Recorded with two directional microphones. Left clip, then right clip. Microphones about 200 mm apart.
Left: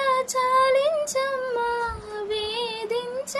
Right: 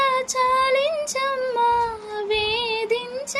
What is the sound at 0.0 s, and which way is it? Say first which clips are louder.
Female singing: right 2 dB; 10° left (ahead or behind).